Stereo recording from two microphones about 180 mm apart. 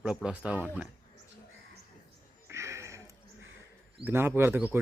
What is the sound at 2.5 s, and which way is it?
Music, 15° right (ahead or behind).